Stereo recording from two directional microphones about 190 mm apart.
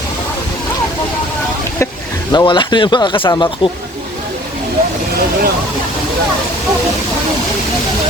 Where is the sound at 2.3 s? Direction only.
25° left (ahead or behind).